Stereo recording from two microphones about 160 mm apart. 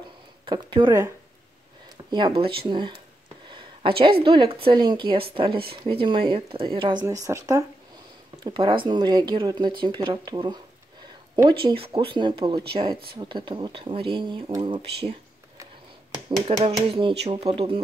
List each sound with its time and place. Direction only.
0.5 s speech: 30° right (ahead or behind)
2.0 s speech: 30° right (ahead or behind)
3.4 s a sound: 30° right (ahead or behind)
4.2 s speech: 30° right (ahead or behind)
8.5 s speech: 30° right (ahead or behind)
16.3 s speech: 35° right (ahead or behind)